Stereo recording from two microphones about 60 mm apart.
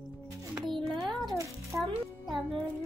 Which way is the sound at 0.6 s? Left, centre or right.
Centre.